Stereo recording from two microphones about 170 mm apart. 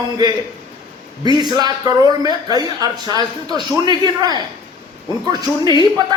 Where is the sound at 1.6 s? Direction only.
20° right (ahead or behind).